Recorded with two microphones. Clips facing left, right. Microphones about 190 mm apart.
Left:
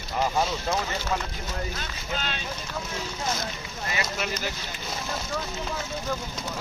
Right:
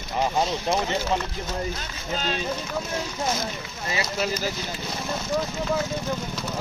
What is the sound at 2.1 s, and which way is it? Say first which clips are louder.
Speech: right 5 dB; 35° right (ahead or behind).